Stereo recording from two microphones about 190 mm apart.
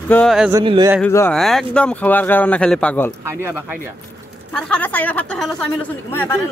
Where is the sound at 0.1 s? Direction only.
Centre (ahead or behind).